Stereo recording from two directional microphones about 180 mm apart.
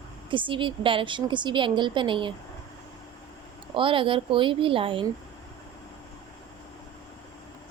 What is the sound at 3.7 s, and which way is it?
A woman's voice, 30° right (ahead or behind).